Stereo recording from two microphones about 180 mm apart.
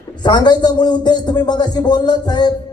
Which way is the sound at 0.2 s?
25° left (ahead or behind).